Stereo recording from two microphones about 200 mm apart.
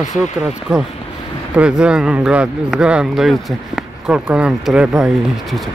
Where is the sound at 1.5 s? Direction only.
5° right (ahead or behind).